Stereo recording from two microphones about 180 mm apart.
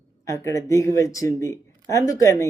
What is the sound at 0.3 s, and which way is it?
A woman's voice, 15° left (ahead or behind).